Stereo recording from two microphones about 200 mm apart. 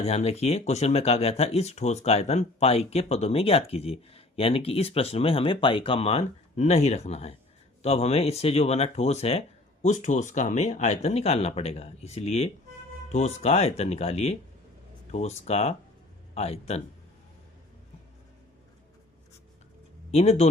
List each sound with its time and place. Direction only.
0.0 s speech: 30° left (ahead or behind)
20.1 s speech: 30° left (ahead or behind)